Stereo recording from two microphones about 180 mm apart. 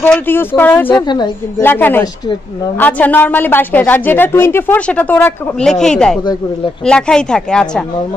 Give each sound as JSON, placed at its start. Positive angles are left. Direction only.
{"t": 0.0, "sound": "a woman's voice", "side_deg": 10}
{"t": 1.0, "sound": "a woman's voice", "side_deg": 25}
{"t": 1.6, "sound": "a woman's voice", "side_deg": 10}